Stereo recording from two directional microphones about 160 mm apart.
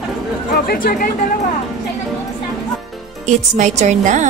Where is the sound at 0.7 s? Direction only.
60° left (ahead or behind).